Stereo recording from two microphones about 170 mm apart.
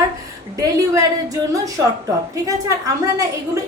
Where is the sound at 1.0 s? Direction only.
20° right (ahead or behind).